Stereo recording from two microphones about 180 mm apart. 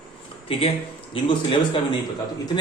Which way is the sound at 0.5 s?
30° left (ahead or behind).